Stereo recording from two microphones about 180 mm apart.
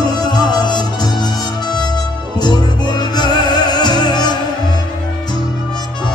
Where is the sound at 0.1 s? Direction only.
25° left (ahead or behind).